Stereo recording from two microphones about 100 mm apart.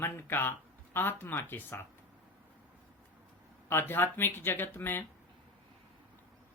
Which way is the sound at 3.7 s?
20° left (ahead or behind).